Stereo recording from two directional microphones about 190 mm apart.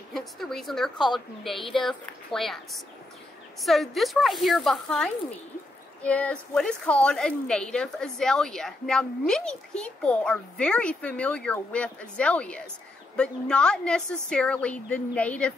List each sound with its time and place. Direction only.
0.1 s a woman's voice: centre (ahead or behind)